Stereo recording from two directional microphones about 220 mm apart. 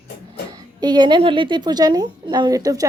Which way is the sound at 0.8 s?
20° right (ahead or behind).